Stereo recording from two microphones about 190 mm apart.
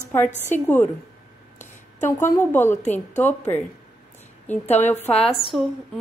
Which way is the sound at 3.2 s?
10° left (ahead or behind).